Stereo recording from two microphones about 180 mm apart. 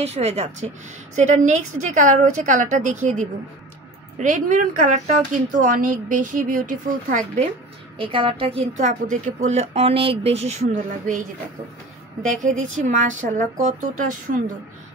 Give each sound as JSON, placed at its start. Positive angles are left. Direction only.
{"t": 0.0, "sound": "a woman's voice", "side_deg": -35}
{"t": 8.0, "sound": "a woman's voice", "side_deg": -30}
{"t": 12.3, "sound": "a woman's voice", "side_deg": -45}